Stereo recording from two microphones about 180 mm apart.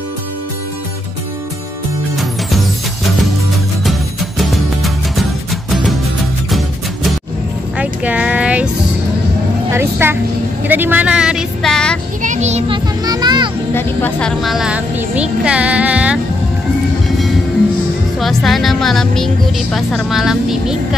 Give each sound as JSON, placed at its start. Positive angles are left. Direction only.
{"t": 3.8, "sound": "music", "side_deg": 0}
{"t": 7.7, "sound": "a sound", "side_deg": -5}
{"t": 9.7, "sound": "vehicle", "side_deg": -15}
{"t": 12.2, "sound": "children playing", "side_deg": -40}
{"t": 13.7, "sound": "music", "side_deg": 10}
{"t": 14.4, "sound": "music", "side_deg": 0}
{"t": 18.2, "sound": "speech", "side_deg": 0}